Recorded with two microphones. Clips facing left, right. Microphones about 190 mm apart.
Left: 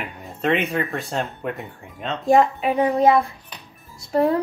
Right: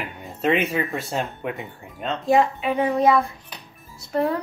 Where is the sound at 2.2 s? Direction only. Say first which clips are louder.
Left 3 dB; 45° left (ahead or behind).